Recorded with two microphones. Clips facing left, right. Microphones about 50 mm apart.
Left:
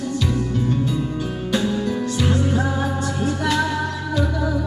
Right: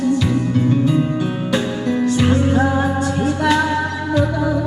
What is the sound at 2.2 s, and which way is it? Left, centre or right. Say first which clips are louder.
Music: right 4 dB; right.